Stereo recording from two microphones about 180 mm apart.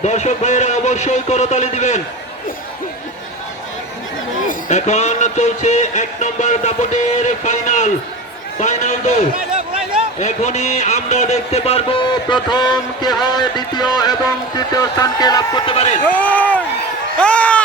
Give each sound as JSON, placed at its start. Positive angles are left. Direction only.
{"t": 0.0, "sound": "music", "side_deg": 40}
{"t": 4.4, "sound": "music", "side_deg": 40}
{"t": 10.2, "sound": "music", "side_deg": 40}
{"t": 13.2, "sound": "speech", "side_deg": 25}
{"t": 16.0, "sound": "speech", "side_deg": 10}